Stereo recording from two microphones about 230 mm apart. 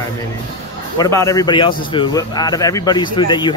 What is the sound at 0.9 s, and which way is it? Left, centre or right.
Speech, centre.